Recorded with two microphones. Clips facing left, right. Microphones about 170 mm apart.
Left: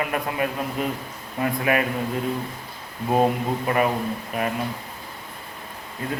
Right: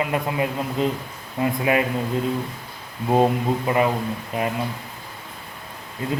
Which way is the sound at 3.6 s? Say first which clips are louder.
Even; 20° right (ahead or behind).